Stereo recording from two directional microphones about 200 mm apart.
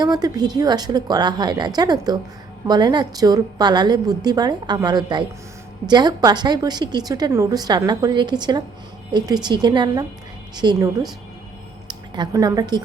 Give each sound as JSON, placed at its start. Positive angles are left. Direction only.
{"t": 0.0, "sound": "a woman's voice", "side_deg": -20}